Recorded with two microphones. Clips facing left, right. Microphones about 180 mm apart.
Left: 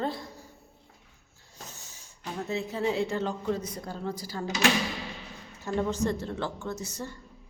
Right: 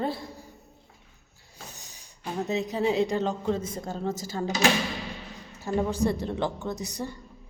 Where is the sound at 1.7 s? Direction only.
15° right (ahead or behind).